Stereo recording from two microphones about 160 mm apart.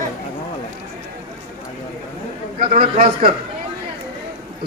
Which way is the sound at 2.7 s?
65° right (ahead or behind).